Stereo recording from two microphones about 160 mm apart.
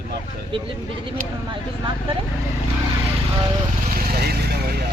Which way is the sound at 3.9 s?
70° right (ahead or behind).